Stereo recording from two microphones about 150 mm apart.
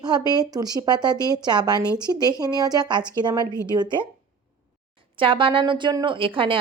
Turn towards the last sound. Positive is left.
turn(degrees=-35)  # may be behind; listen again after turning